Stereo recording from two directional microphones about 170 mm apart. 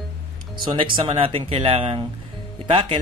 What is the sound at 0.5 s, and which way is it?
Speech, 30° right (ahead or behind).